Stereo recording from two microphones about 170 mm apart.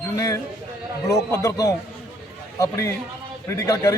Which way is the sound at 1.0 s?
20° left (ahead or behind).